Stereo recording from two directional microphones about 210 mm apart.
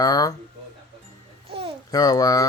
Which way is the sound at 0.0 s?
15° left (ahead or behind).